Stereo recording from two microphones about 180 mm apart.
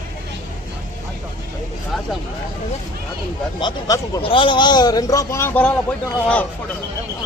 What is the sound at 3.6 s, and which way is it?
A man's voice, 20° left (ahead or behind).